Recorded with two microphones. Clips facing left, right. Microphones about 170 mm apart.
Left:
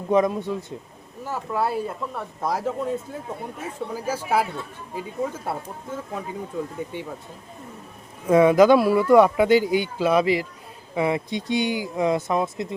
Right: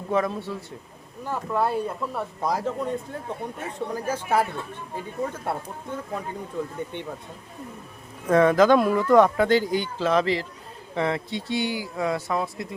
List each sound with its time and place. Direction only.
0.1 s speech: 15° left (ahead or behind)
1.2 s speech: 5° left (ahead or behind)
8.3 s speech: 10° left (ahead or behind)